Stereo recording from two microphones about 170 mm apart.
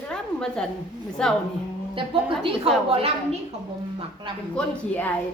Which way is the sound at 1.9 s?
35° right (ahead or behind).